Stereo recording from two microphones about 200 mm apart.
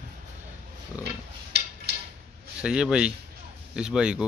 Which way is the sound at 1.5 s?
55° right (ahead or behind).